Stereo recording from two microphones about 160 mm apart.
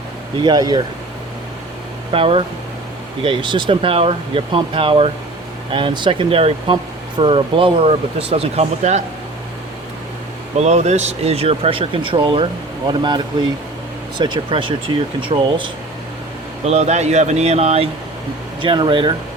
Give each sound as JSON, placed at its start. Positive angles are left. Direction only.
{"t": 0.3, "sound": "speech", "side_deg": -25}
{"t": 2.1, "sound": "speech", "side_deg": -35}
{"t": 10.6, "sound": "speech", "side_deg": -45}
{"t": 16.6, "sound": "speech", "side_deg": -40}